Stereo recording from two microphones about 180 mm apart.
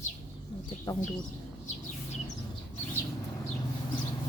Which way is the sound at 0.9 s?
25° left (ahead or behind).